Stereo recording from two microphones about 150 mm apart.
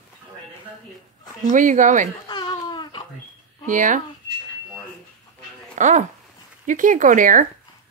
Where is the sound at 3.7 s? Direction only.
60° right (ahead or behind).